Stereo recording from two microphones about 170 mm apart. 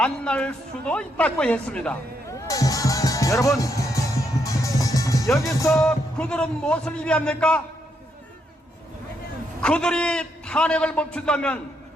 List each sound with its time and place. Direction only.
0.0 s speech: 5° left (ahead or behind)
2.5 s speech: 20° left (ahead or behind)
4.4 s music: 20° left (ahead or behind)
5.5 s speech: 20° left (ahead or behind)
5.8 s a man's voice: 5° left (ahead or behind)
9.6 s a man's voice: 5° left (ahead or behind)